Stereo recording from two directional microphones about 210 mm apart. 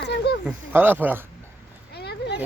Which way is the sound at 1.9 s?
50° left (ahead or behind).